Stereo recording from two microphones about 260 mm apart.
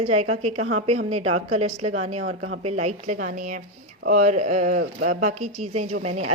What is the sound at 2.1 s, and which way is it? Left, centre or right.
Speech, right.